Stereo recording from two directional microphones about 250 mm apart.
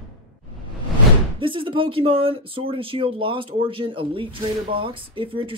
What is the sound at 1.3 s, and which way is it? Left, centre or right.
Speech, centre.